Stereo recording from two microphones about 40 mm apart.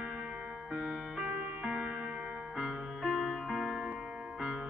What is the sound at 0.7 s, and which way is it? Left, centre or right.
Music, right.